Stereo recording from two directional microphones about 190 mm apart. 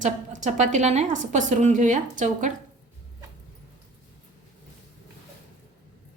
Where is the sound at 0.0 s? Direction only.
40° right (ahead or behind).